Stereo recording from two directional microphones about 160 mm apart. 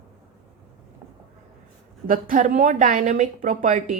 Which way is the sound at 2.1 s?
55° right (ahead or behind).